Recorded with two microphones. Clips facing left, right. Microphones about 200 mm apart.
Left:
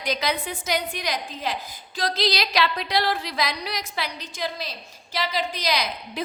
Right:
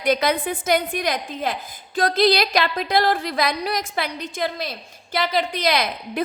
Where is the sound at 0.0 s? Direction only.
55° right (ahead or behind).